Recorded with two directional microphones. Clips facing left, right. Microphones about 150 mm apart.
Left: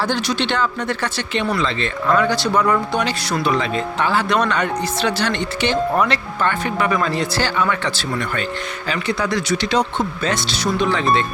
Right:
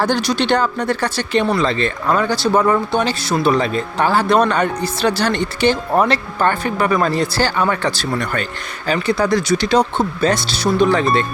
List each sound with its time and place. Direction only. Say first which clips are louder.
0.0 s speech: right 3 dB; 45° right (ahead or behind)